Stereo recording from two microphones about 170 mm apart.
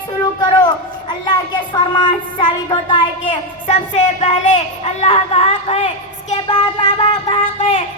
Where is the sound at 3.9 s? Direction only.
40° left (ahead or behind).